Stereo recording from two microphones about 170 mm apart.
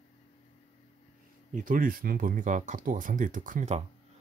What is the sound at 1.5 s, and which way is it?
Speech, 55° right (ahead or behind).